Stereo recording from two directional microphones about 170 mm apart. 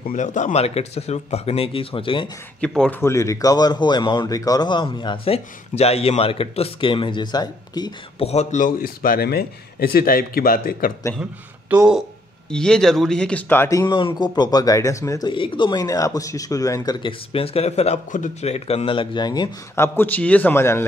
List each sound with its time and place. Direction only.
0.1 s speech: 45° left (ahead or behind); by 2.3 s 30° left (ahead or behind)
2.6 s a man's voice: 5° left (ahead or behind)
3.0 s speech: 15° left (ahead or behind)
8.2 s a man's voice: 40° left (ahead or behind); by 10.9 s 60° left (ahead or behind)
11.7 s a man's voice: 5° right (ahead or behind); by 20.8 s 15° left (ahead or behind)